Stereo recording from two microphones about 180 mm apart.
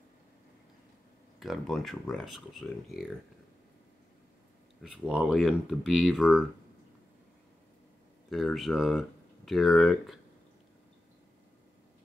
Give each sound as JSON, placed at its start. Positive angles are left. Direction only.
{"t": 1.4, "sound": "speech", "side_deg": 0}
{"t": 5.0, "sound": "speech", "side_deg": -5}
{"t": 8.3, "sound": "speech", "side_deg": 0}